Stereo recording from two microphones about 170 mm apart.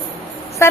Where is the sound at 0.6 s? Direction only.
15° left (ahead or behind).